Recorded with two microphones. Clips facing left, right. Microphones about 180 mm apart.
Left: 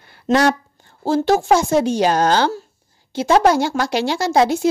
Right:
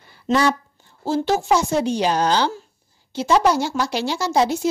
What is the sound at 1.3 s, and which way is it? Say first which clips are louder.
A woman's voice: left 4 dB; 50° left (ahead or behind).